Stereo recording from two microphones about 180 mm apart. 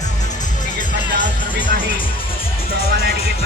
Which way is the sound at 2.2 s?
30° left (ahead or behind).